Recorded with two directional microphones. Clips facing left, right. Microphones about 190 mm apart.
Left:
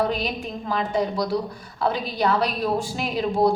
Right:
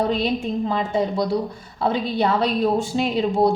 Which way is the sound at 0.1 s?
25° right (ahead or behind).